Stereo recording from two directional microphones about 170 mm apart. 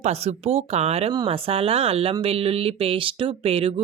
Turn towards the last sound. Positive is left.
turn(degrees=-35)  # may be behind; listen again after turning